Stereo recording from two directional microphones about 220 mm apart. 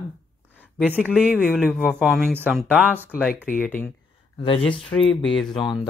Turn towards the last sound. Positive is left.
turn(degrees=20)  # may be behind; listen again after turning